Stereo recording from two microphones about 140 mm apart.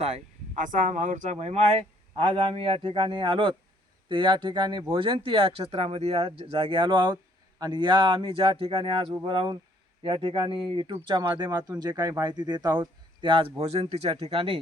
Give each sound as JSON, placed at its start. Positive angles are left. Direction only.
{"t": 0.0, "sound": "speech", "side_deg": -60}
{"t": 13.6, "sound": "speech", "side_deg": -50}